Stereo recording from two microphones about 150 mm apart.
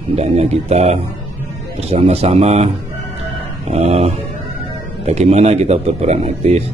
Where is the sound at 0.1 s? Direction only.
45° right (ahead or behind).